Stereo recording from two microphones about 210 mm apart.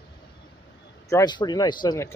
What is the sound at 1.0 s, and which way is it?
Speech, 15° left (ahead or behind).